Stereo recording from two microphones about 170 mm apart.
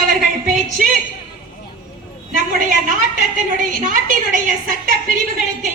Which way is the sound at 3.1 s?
50° right (ahead or behind).